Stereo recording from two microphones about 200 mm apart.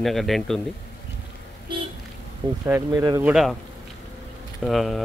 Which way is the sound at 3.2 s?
Centre (ahead or behind).